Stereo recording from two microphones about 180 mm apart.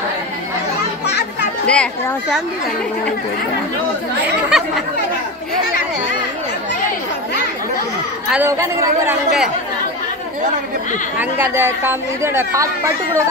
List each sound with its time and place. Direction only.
1.0 s children playing: 70° left (ahead or behind)
1.7 s a child's voice: 5° left (ahead or behind)
4.5 s speech: centre (ahead or behind)
8.3 s speech: 10° right (ahead or behind)
11.1 s speech: 10° right (ahead or behind)